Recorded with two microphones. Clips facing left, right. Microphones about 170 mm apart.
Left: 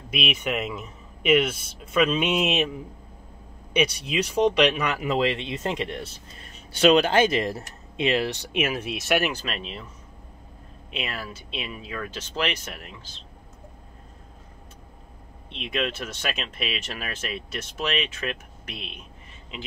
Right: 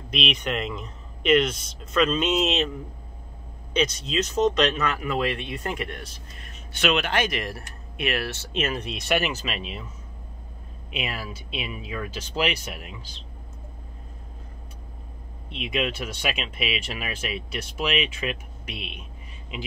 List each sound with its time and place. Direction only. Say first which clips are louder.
0.1 s speech: even; 5° left (ahead or behind)
11.0 s speech: right 1 dB; 10° right (ahead or behind)
15.5 s speech: right 1 dB; 10° right (ahead or behind)